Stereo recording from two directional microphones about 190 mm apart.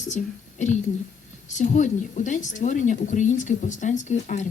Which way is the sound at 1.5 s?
40° left (ahead or behind).